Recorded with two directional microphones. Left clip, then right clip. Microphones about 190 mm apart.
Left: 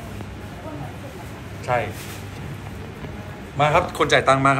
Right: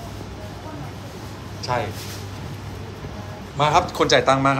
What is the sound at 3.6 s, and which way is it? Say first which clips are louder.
Speech: even; 25° right (ahead or behind).